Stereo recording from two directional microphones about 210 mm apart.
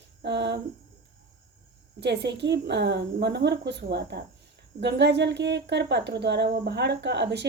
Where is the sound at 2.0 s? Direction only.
55° right (ahead or behind).